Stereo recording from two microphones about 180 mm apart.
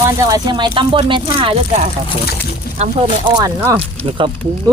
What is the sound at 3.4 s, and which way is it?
Speech, 15° right (ahead or behind).